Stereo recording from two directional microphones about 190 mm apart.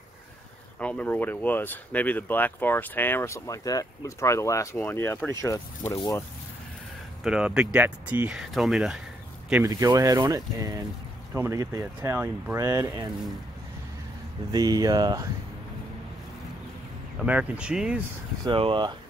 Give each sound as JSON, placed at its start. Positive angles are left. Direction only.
{"t": 0.7, "sound": "speech", "side_deg": 5}
{"t": 7.2, "sound": "speech", "side_deg": -5}
{"t": 9.7, "sound": "speech", "side_deg": -20}
{"t": 14.5, "sound": "speech", "side_deg": -20}
{"t": 17.3, "sound": "speech", "side_deg": -5}
{"t": 18.4, "sound": "speech", "side_deg": -25}